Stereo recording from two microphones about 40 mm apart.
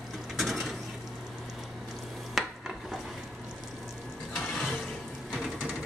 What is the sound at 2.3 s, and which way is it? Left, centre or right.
Stir, centre.